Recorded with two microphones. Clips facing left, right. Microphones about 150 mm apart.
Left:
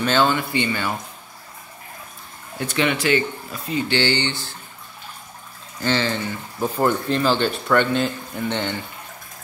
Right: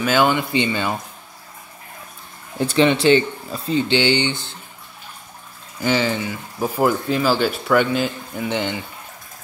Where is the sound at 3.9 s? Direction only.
15° right (ahead or behind).